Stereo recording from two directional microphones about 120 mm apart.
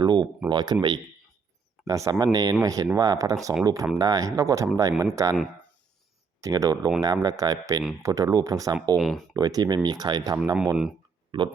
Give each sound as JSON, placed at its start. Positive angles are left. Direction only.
{"t": 0.0, "sound": "speech", "side_deg": -35}
{"t": 6.4, "sound": "speech", "side_deg": -30}
{"t": 9.0, "sound": "speech", "side_deg": 0}
{"t": 9.3, "sound": "speech", "side_deg": -30}